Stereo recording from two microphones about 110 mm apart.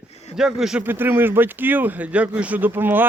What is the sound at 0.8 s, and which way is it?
Speech, 20° right (ahead or behind).